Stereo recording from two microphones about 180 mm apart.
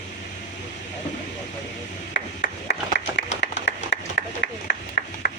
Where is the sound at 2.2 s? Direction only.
65° left (ahead or behind).